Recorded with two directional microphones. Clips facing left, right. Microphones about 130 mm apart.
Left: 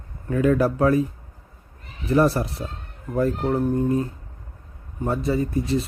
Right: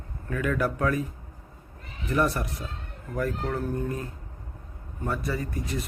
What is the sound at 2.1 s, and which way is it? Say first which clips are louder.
Speech: left 7 dB; 30° left (ahead or behind).